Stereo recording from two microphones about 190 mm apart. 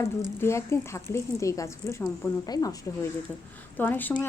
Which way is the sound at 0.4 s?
15° left (ahead or behind).